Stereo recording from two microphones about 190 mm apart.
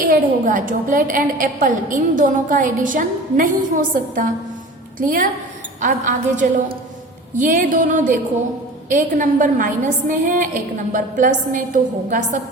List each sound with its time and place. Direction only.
0.0 s a woman's voice: 45° right (ahead or behind)